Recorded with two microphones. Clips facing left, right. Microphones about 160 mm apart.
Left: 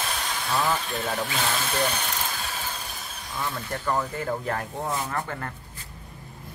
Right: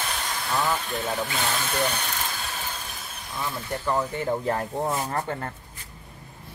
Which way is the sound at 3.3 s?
5° right (ahead or behind).